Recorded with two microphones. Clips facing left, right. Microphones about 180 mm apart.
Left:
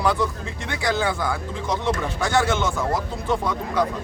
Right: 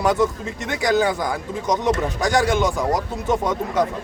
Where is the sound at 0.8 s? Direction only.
15° right (ahead or behind).